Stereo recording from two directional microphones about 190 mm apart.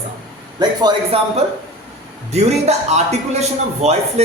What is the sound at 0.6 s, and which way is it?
Speech, 20° right (ahead or behind).